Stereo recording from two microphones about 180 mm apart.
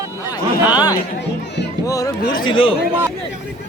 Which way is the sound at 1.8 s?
20° left (ahead or behind).